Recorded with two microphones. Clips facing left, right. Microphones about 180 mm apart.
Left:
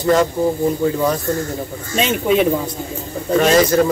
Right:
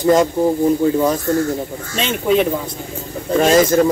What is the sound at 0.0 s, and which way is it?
Speech, 20° right (ahead or behind).